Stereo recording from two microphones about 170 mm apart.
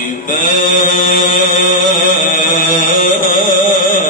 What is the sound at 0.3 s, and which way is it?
Mantra, 50° left (ahead or behind).